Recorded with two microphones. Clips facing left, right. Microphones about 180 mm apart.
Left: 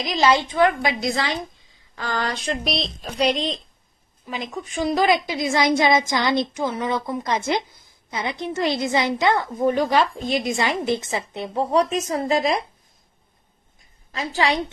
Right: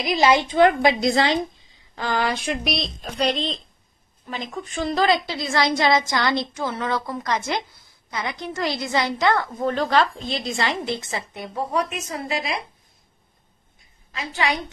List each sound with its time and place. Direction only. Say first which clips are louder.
0.0 s a woman's voice: right 1 dB; 15° right (ahead or behind)
2.0 s a woman's voice: right 3 dB; 15° right (ahead or behind); by 10.0 s 15° left (ahead or behind)
10.1 s a woman's voice: left 5 dB; 45° left (ahead or behind)
10.4 s a woman's voice: left 3 dB; 20° left (ahead or behind); by 12.5 s 40° left (ahead or behind)
14.1 s a woman's voice: left 3 dB; 35° left (ahead or behind)